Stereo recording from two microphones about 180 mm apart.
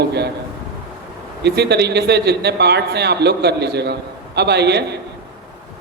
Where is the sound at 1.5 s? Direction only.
70° right (ahead or behind).